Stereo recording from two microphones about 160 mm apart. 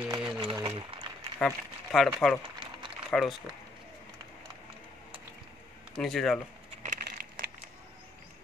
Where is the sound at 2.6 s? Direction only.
30° right (ahead or behind).